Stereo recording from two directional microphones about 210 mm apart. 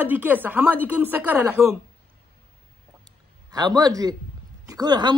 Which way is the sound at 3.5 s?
20° right (ahead or behind).